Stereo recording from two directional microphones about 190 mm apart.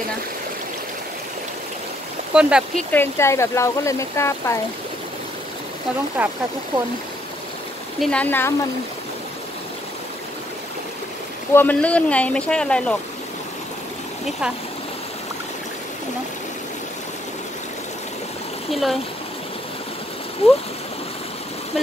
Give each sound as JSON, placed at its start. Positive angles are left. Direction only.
{"t": 2.3, "sound": "speech", "side_deg": -5}
{"t": 2.9, "sound": "speech", "side_deg": 15}
{"t": 6.2, "sound": "speech", "side_deg": -5}
{"t": 8.0, "sound": "speech", "side_deg": 5}
{"t": 11.5, "sound": "speech", "side_deg": 10}
{"t": 18.7, "sound": "speech", "side_deg": 0}
{"t": 20.4, "sound": "speech", "side_deg": 30}